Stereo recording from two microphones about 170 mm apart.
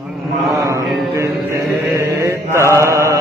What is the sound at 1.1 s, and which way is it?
Mantra, 15° right (ahead or behind).